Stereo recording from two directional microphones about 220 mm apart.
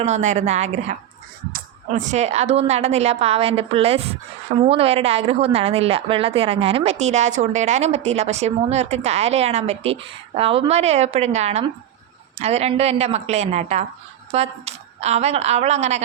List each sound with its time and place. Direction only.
0.0 s a woman's voice: 30° right (ahead or behind)